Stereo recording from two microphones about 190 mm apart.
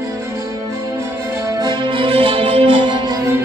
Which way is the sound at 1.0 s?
15° right (ahead or behind).